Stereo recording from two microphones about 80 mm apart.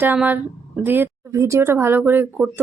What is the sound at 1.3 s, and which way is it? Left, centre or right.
Speech, right.